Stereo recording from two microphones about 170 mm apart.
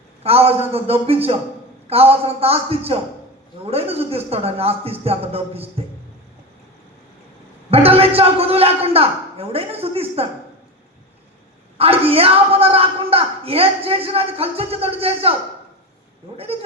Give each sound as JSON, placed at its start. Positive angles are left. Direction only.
{"t": 0.2, "sound": "a woman's voice", "side_deg": -35}
{"t": 7.7, "sound": "a woman's voice", "side_deg": -35}
{"t": 11.8, "sound": "a woman's voice", "side_deg": -35}